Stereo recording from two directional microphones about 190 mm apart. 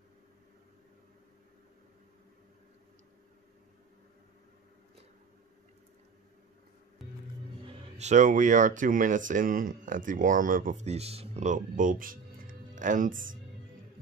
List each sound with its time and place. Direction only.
7.6 s speech: 30° right (ahead or behind); by 13.4 s 45° right (ahead or behind)